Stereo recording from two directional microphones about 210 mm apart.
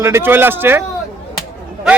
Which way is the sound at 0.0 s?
10° right (ahead or behind).